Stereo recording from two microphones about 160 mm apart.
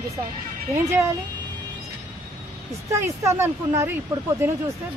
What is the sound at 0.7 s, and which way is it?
Speech, 15° right (ahead or behind).